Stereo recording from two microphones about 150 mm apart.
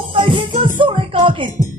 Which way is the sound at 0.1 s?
35° right (ahead or behind).